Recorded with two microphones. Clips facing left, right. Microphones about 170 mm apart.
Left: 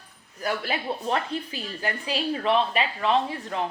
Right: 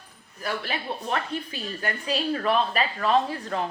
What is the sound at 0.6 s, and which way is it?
A woman's voice, 30° left (ahead or behind).